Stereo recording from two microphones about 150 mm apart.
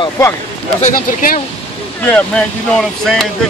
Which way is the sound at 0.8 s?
65° left (ahead or behind).